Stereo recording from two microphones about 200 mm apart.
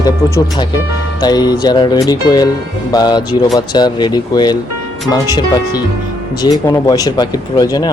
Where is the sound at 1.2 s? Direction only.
20° left (ahead or behind).